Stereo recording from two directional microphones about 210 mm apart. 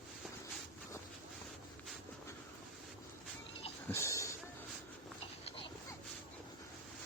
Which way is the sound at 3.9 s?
15° left (ahead or behind).